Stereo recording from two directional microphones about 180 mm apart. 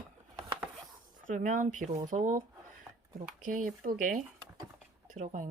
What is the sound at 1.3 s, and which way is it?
Speech, 45° right (ahead or behind).